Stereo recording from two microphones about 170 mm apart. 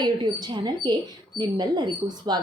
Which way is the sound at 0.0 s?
25° right (ahead or behind).